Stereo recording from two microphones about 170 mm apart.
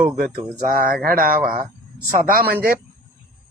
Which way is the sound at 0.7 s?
60° right (ahead or behind).